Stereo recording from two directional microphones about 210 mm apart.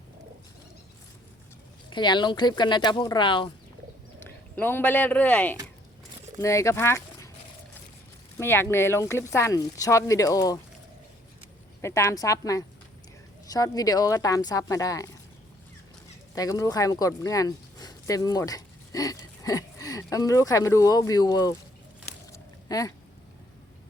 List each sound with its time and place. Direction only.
1.9 s speech: 20° left (ahead or behind)
4.2 s speech: 10° left (ahead or behind)
8.4 s speech: 10° left (ahead or behind)
11.8 s speech: 15° left (ahead or behind)
16.3 s speech: 15° left (ahead or behind)
22.3 s a sound: 15° left (ahead or behind)